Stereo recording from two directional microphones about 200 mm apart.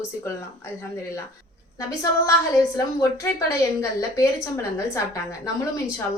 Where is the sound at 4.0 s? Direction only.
15° left (ahead or behind).